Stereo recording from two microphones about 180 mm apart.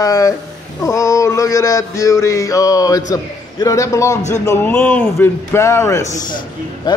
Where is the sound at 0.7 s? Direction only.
15° left (ahead or behind).